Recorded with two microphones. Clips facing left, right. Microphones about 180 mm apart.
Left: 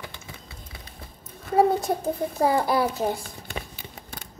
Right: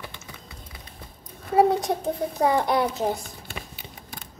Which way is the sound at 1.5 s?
Centre (ahead or behind).